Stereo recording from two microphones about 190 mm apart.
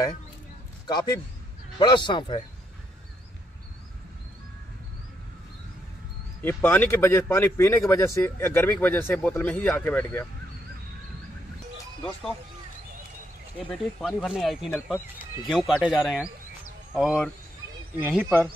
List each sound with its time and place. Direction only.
0.8 s a man's voice: 20° left (ahead or behind)
6.4 s speech: 10° left (ahead or behind)
13.7 s speech: 10° left (ahead or behind); by 18.5 s 10° right (ahead or behind)